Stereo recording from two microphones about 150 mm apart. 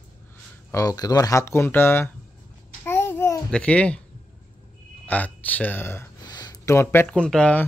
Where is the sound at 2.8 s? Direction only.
15° left (ahead or behind).